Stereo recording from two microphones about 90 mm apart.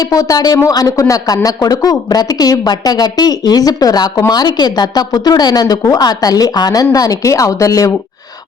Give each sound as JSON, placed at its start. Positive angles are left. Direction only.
{"t": 0.0, "sound": "a woman's voice", "side_deg": 45}